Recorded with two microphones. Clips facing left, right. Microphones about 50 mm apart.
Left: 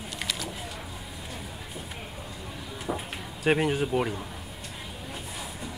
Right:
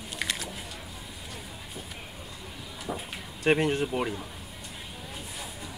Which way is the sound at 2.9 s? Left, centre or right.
Centre.